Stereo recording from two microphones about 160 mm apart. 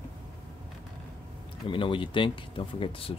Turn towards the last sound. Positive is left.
turn(degrees=35)  # may be behind; listen again after turning